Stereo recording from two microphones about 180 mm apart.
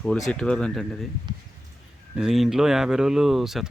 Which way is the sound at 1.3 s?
25° right (ahead or behind).